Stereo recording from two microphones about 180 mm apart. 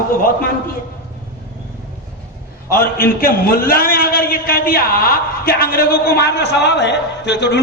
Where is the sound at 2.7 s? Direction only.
55° left (ahead or behind).